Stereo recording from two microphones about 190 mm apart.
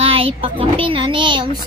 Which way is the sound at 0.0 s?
30° right (ahead or behind).